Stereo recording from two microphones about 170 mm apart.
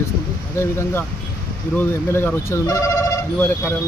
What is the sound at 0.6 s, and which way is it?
Speech, 15° left (ahead or behind).